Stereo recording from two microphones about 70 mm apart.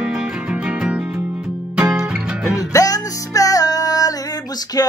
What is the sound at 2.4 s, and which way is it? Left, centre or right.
Music, left.